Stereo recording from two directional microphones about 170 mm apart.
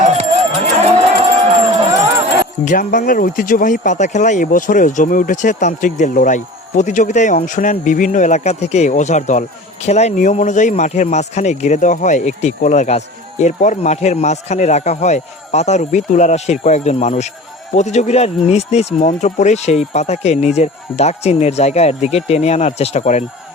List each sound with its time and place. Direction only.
0.2 s livestock: 40° right (ahead or behind)
2.6 s speech: 50° left (ahead or behind)